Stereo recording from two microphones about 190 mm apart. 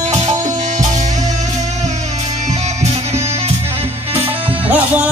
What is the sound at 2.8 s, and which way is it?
Music, 35° right (ahead or behind).